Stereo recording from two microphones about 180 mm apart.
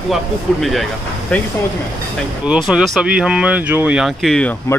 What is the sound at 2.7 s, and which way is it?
Speech, 5° right (ahead or behind).